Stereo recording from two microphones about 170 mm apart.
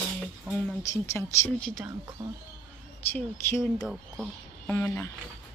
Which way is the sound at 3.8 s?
Centre (ahead or behind).